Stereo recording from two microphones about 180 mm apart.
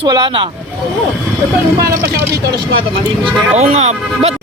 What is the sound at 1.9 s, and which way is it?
Speech, 15° right (ahead or behind).